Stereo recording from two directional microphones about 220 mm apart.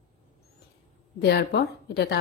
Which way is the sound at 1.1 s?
50° left (ahead or behind).